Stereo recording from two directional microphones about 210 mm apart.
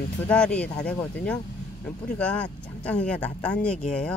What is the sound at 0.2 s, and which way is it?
Speech, 5° left (ahead or behind).